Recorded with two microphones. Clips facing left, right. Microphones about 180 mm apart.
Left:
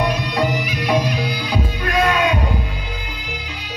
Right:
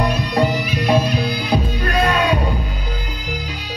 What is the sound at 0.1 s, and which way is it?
Music, 30° right (ahead or behind).